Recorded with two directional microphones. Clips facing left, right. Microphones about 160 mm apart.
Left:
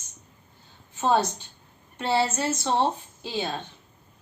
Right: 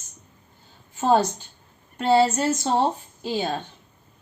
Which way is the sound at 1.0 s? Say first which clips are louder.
Right 3 dB; 45° right (ahead or behind).